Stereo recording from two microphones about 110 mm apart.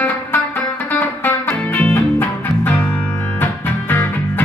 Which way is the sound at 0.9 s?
20° left (ahead or behind).